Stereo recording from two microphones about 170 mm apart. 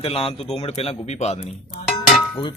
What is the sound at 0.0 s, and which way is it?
A man's voice, 35° left (ahead or behind).